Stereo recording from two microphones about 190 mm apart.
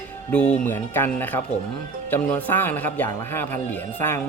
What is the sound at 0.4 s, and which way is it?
Speech, 40° left (ahead or behind).